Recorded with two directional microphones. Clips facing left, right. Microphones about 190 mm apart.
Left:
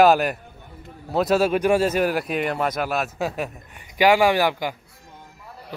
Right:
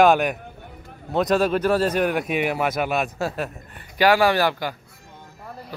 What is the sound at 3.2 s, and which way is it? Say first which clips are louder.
Speech: even; 15° left (ahead or behind).